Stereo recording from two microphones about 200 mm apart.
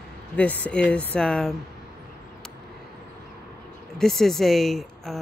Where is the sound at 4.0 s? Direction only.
Centre (ahead or behind).